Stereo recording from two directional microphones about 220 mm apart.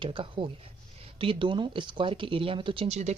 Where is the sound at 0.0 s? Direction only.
25° right (ahead or behind).